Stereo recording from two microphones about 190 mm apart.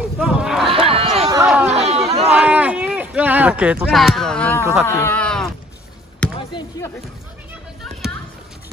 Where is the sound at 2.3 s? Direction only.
5° right (ahead or behind).